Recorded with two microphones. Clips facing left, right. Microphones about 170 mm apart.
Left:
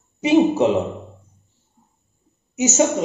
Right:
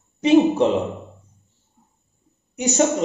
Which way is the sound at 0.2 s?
10° left (ahead or behind).